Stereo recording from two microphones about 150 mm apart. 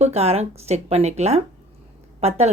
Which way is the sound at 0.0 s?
45° right (ahead or behind).